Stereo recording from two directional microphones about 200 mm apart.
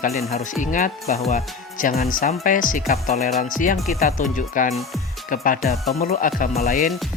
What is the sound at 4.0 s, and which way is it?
Speech, 40° left (ahead or behind).